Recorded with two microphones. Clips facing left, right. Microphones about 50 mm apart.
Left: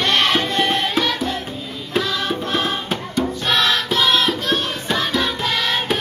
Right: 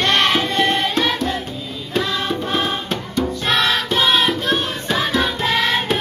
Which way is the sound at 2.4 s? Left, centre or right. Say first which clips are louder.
Right 1 dB; centre.